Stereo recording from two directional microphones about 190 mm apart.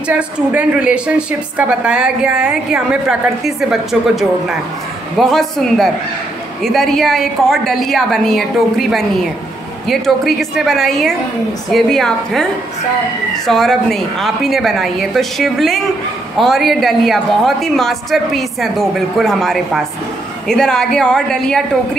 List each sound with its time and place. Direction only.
0.1 s a woman's voice: 10° right (ahead or behind)
13.5 s a woman's voice: centre (ahead or behind)